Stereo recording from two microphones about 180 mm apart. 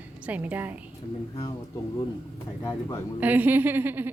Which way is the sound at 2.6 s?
20° left (ahead or behind).